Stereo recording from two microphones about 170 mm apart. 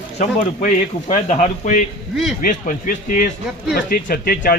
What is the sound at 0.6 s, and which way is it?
Speech, 45° left (ahead or behind).